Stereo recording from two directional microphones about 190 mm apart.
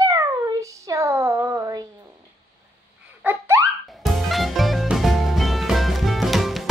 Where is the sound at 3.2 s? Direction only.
10° right (ahead or behind).